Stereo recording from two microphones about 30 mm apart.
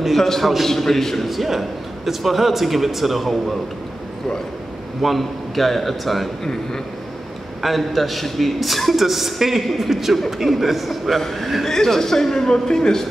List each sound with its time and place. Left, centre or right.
0.2 s a man's voice: centre
5.0 s a man's voice: centre
7.6 s a man's voice: centre
9.8 s a man's voice: centre
11.7 s a man's voice: centre